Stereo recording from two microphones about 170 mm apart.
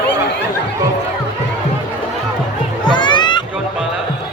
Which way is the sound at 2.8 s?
25° left (ahead or behind).